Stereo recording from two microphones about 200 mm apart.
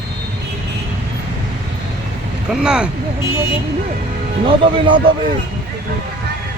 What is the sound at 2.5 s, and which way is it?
Speech, 5° right (ahead or behind).